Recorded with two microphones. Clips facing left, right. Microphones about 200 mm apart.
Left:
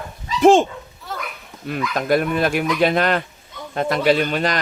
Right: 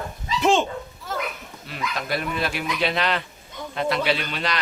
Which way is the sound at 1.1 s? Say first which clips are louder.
Right 2 dB; centre (ahead or behind).